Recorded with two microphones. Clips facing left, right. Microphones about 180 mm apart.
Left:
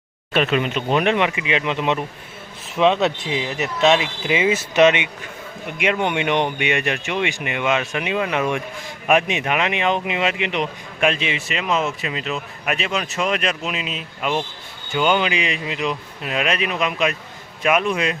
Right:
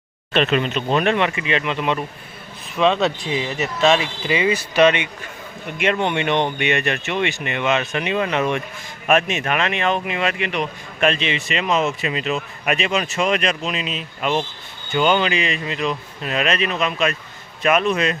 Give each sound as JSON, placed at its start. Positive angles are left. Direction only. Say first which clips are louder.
{"t": 0.3, "sound": "speech", "louder": "right 1 dB", "side_deg": 10}
{"t": 11.1, "sound": "speech", "louder": "right 2 dB", "side_deg": 5}